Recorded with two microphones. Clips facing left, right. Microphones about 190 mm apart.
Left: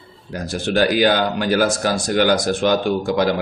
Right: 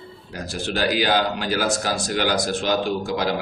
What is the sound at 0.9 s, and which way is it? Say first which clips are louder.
Speech: left 4 dB; 55° left (ahead or behind).